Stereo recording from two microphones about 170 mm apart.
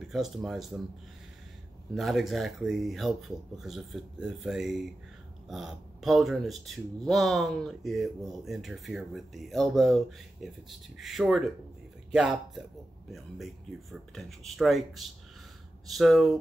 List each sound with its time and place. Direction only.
0.0 s speech: centre (ahead or behind)
2.0 s speech: centre (ahead or behind)